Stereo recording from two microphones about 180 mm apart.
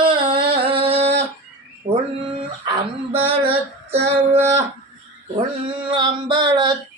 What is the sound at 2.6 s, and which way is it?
Female singing, 30° right (ahead or behind).